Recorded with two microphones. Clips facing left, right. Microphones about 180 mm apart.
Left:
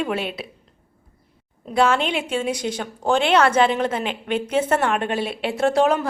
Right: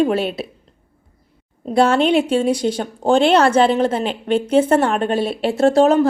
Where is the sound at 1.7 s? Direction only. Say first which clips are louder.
Right 5 dB; 35° right (ahead or behind).